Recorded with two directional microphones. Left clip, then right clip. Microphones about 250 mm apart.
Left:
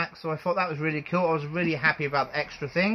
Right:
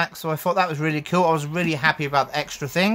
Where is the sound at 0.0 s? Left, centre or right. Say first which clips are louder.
Right 5 dB; right.